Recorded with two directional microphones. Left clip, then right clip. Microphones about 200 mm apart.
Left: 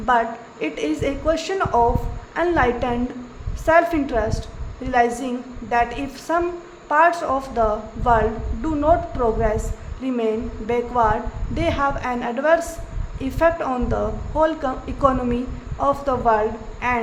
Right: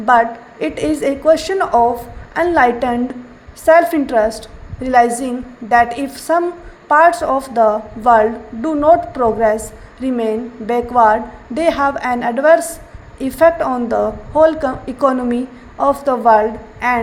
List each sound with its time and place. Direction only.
0.0 s a woman's voice: 25° right (ahead or behind)